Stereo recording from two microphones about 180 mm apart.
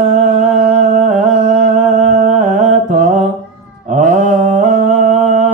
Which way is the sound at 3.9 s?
40° right (ahead or behind).